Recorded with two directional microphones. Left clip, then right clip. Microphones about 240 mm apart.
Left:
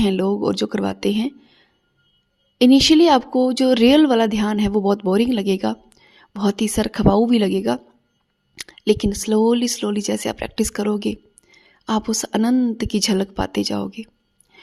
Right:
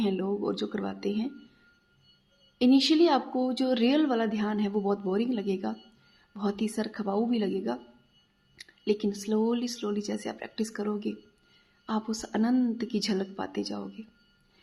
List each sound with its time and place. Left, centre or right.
0.0 s speech: left
2.6 s speech: left